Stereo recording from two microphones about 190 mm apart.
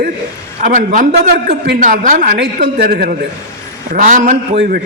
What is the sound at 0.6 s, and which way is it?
A man's voice, 40° right (ahead or behind).